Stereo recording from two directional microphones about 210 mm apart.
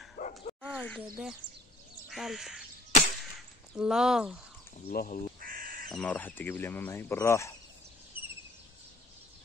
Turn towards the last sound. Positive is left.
turn(degrees=10)  # may be behind; listen again after turning